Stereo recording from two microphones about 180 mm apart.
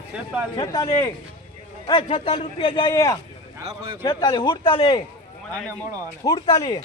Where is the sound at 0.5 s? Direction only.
20° left (ahead or behind).